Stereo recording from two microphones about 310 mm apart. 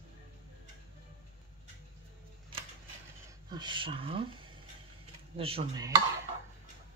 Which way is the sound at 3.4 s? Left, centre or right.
Centre.